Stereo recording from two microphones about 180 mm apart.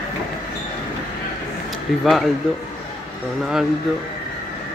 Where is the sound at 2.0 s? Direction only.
Centre (ahead or behind).